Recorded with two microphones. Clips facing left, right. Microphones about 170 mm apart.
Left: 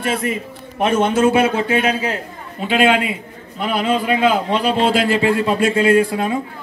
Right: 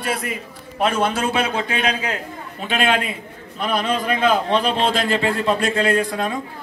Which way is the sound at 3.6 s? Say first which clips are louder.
Left 3 dB; 20° left (ahead or behind).